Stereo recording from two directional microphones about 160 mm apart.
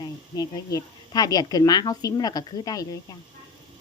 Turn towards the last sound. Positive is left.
turn(degrees=25)  # may be behind; listen again after turning